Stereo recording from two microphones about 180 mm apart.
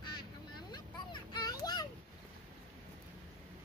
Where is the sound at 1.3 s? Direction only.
20° left (ahead or behind).